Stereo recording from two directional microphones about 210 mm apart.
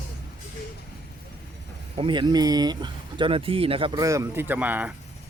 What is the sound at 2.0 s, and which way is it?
Speech, 20° right (ahead or behind).